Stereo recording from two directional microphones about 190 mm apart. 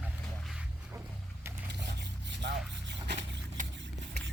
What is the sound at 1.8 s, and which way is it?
Rub, 65° right (ahead or behind).